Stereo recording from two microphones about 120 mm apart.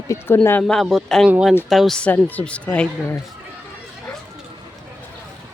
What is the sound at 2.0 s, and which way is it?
Speech, 15° left (ahead or behind).